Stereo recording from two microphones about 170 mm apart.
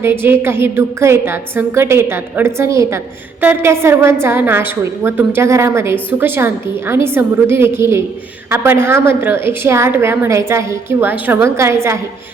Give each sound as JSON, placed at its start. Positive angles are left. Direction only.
{"t": 0.0, "sound": "a woman's voice", "side_deg": -15}